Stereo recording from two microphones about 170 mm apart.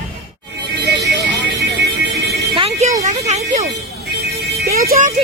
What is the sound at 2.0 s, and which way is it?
Music, 70° right (ahead or behind).